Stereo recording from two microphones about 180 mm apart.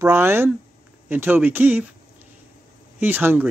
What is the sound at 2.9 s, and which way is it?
Speech, 10° right (ahead or behind).